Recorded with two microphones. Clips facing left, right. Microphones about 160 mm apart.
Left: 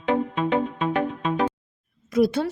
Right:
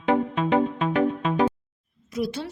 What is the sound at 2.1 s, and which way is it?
Speech, 55° left (ahead or behind).